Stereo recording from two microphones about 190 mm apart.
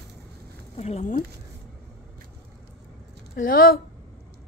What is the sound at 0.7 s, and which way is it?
Speech, 35° left (ahead or behind).